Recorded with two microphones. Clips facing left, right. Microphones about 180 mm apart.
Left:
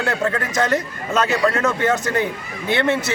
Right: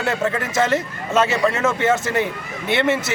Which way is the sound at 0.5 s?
25° right (ahead or behind).